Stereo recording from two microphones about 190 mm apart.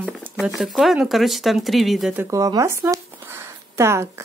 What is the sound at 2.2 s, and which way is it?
Speech, 15° right (ahead or behind).